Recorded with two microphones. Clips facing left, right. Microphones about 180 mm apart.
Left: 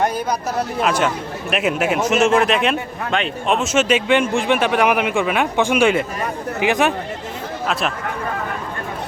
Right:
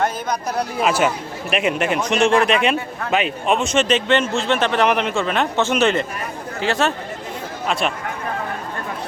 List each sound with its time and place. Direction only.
0.8 s a man's voice: 5° right (ahead or behind); by 6.9 s 15° left (ahead or behind)
7.7 s speech: centre (ahead or behind)